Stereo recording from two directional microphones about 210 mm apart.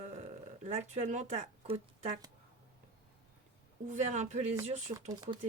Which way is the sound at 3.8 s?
35° right (ahead or behind).